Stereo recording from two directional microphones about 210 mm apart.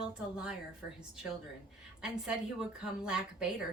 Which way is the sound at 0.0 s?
5° right (ahead or behind).